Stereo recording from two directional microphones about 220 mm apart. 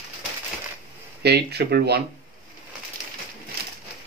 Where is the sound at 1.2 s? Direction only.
50° right (ahead or behind).